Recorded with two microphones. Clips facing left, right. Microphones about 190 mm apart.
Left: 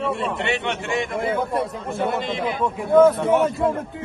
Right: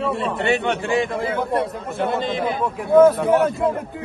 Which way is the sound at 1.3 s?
Centre (ahead or behind).